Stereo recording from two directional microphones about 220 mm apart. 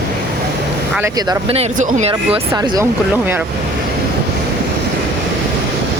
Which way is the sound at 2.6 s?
15° right (ahead or behind).